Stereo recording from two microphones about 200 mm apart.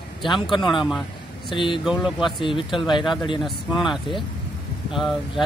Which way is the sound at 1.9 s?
Centre (ahead or behind).